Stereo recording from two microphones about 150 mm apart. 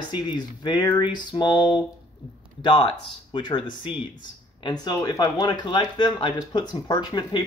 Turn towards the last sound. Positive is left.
turn(degrees=30)  # may be behind; listen again after turning